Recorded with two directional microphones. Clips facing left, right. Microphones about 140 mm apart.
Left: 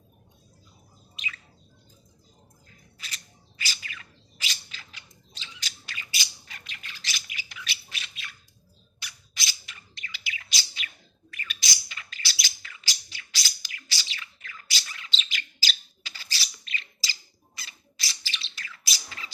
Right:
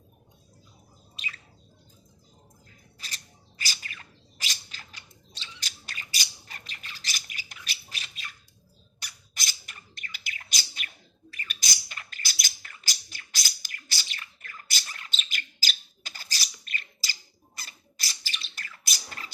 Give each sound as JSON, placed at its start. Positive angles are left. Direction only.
{"t": 1.1, "sound": "bird", "side_deg": -35}
{"t": 3.6, "sound": "bird", "side_deg": -40}